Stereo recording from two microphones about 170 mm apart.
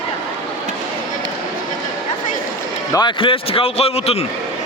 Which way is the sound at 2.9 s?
25° left (ahead or behind).